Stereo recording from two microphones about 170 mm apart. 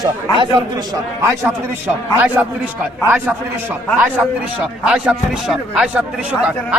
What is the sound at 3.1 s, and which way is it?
A man's voice, 10° right (ahead or behind).